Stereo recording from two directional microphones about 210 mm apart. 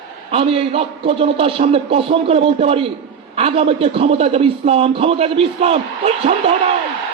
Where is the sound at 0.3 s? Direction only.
30° right (ahead or behind).